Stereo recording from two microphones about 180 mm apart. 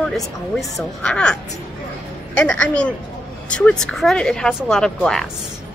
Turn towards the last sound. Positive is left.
turn(degrees=5)  # may be behind; listen again after turning